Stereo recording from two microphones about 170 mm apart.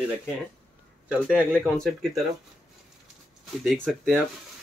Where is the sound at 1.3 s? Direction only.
5° left (ahead or behind).